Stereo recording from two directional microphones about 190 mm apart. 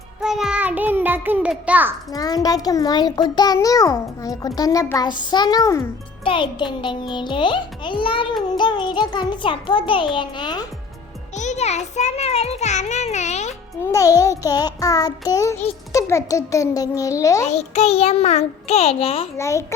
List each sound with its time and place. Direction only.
0.2 s a child's voice: 5° right (ahead or behind)
2.1 s a child's voice: 20° left (ahead or behind)
11.3 s a child's voice: 35° left (ahead or behind)
13.9 s a child's voice: 20° left (ahead or behind)
17.4 s a child's voice: 35° left (ahead or behind)
19.4 s a child's voice: 15° left (ahead or behind)